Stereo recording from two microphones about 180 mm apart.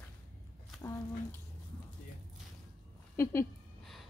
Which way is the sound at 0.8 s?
15° left (ahead or behind).